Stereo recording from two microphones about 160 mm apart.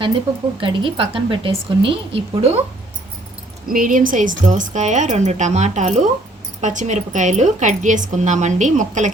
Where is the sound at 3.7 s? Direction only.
60° right (ahead or behind).